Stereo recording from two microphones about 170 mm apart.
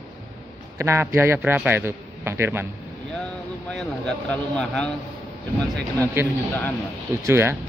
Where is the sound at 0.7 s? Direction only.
15° right (ahead or behind).